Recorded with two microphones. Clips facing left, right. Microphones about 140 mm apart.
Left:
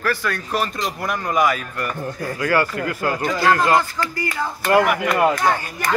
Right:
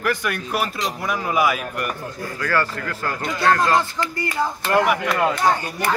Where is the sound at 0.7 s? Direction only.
Centre (ahead or behind).